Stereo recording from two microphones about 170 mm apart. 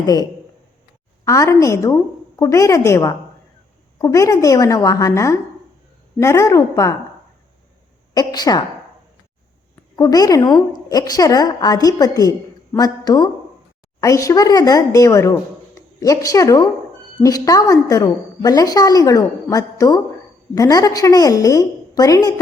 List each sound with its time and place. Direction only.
0.0 s a woman's voice: 20° left (ahead or behind)
8.1 s a woman's voice: 20° left (ahead or behind)
9.9 s a woman's voice: 20° left (ahead or behind)